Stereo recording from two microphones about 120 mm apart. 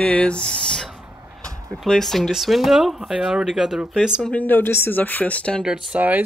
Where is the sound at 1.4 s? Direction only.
30° right (ahead or behind).